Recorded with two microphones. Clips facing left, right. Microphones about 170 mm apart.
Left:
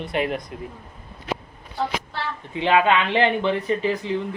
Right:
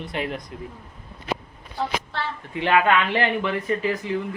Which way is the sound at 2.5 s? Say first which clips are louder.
Left 1 dB; 20° left (ahead or behind).